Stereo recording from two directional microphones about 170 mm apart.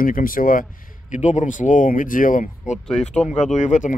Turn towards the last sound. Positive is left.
turn(degrees=45)  # may be behind; listen again after turning